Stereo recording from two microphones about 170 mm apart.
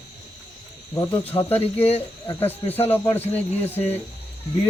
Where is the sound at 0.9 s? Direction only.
20° left (ahead or behind).